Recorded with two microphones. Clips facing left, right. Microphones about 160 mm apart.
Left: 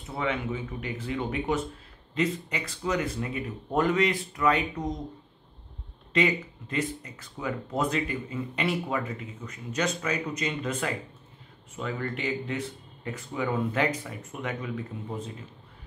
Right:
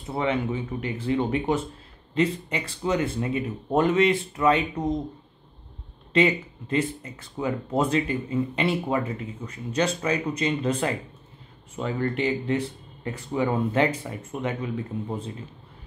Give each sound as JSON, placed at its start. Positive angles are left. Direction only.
{"t": 0.1, "sound": "speech", "side_deg": -30}
{"t": 6.1, "sound": "speech", "side_deg": -25}